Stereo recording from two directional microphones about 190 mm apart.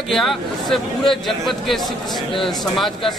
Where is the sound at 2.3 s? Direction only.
25° left (ahead or behind).